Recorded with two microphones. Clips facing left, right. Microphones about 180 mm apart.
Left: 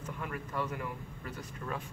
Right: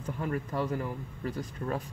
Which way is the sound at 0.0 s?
30° right (ahead or behind).